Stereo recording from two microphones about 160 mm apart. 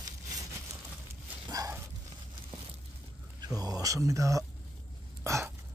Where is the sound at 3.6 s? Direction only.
20° right (ahead or behind).